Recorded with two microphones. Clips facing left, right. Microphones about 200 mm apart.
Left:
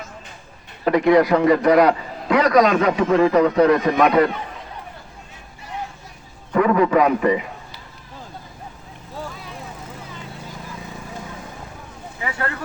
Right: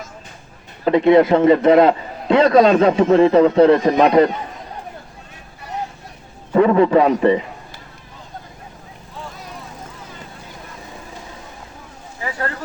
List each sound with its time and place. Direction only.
0.9 s a man's voice: 25° right (ahead or behind)
6.5 s a man's voice: 30° right (ahead or behind)